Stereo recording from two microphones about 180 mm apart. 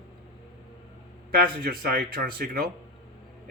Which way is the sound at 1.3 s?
55° right (ahead or behind).